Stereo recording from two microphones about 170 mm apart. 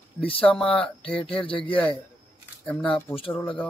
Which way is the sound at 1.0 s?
30° left (ahead or behind).